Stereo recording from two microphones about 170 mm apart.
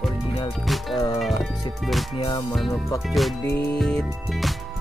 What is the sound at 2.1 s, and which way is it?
Music, 30° left (ahead or behind).